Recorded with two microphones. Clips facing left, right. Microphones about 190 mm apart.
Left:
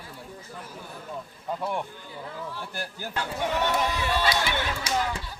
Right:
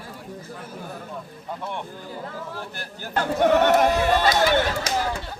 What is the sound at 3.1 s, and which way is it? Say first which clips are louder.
Speech: right 10 dB; 55° right (ahead or behind).